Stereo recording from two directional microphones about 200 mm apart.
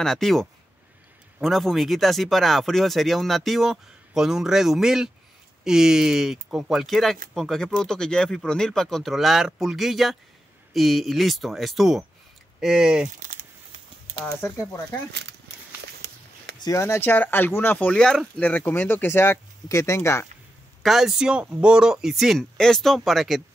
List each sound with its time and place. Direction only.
0.0 s speech: centre (ahead or behind)
13.2 s crumpling: 40° right (ahead or behind)
14.2 s speech: 10° left (ahead or behind)
15.8 s a sound: 55° right (ahead or behind)
16.5 s speech: 20° left (ahead or behind)
20.8 s speech: centre (ahead or behind)